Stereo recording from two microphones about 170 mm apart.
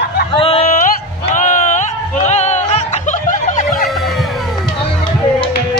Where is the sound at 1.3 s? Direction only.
45° left (ahead or behind).